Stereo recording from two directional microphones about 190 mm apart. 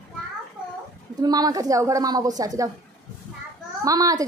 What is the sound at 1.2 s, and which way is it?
A woman's voice, 20° right (ahead or behind).